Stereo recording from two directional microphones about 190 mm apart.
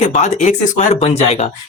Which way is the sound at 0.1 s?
40° left (ahead or behind).